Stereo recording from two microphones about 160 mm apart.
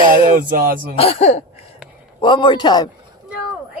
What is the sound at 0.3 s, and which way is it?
Music, 60° right (ahead or behind).